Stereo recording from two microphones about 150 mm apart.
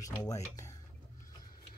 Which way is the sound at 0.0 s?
20° left (ahead or behind).